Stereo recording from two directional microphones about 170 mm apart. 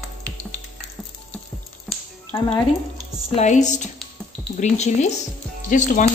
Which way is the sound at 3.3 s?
45° left (ahead or behind).